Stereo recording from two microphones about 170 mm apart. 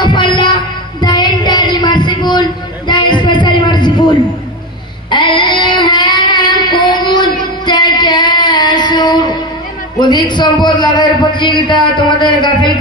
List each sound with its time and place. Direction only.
0.0 s music: 25° left (ahead or behind)
1.0 s a sound: 25° left (ahead or behind)
5.1 s child singing: 25° left (ahead or behind)
9.9 s a man's voice: 25° left (ahead or behind)